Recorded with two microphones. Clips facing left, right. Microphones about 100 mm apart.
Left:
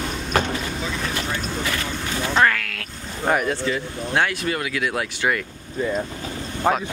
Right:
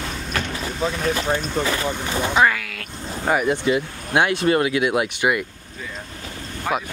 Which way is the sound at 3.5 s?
15° right (ahead or behind).